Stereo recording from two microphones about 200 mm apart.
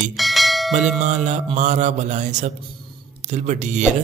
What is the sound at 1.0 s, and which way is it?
Speech, 35° right (ahead or behind).